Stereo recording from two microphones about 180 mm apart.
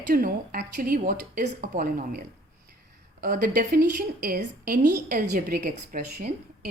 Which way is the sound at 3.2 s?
50° right (ahead or behind).